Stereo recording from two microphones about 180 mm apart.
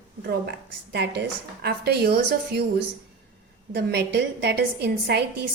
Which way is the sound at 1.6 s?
65° right (ahead or behind).